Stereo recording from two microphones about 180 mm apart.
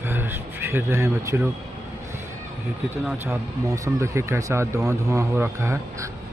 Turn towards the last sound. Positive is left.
turn(degrees=-15)  # may be behind; listen again after turning